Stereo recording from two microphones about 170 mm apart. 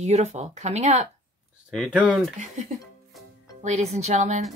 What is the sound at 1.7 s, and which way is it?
Speech, 5° right (ahead or behind).